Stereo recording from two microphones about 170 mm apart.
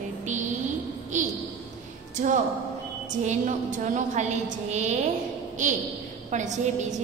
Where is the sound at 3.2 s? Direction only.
45° right (ahead or behind).